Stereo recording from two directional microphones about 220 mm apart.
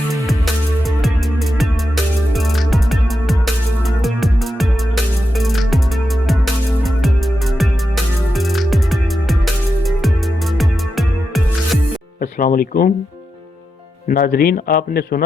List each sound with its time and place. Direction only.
0.3 s music: centre (ahead or behind)
12.2 s speech: 40° left (ahead or behind)
14.1 s a man's voice: 40° left (ahead or behind)